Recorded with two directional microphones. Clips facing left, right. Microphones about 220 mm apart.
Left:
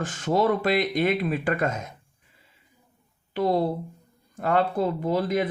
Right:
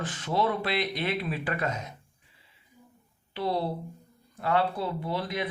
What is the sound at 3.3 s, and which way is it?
Speech, 45° left (ahead or behind).